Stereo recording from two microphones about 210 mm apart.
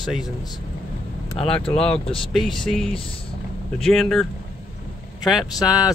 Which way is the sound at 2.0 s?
25° left (ahead or behind).